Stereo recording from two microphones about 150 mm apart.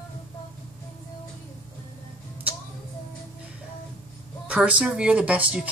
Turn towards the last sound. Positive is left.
turn(degrees=-10)  # may be behind; listen again after turning